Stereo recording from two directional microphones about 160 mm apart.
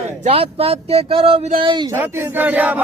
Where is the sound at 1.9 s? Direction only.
15° right (ahead or behind).